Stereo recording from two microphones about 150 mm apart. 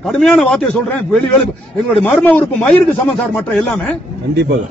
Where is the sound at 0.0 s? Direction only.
5° left (ahead or behind).